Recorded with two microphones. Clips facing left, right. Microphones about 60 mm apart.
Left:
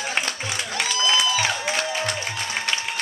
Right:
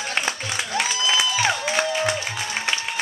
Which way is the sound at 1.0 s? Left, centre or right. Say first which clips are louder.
Left 1 dB; centre.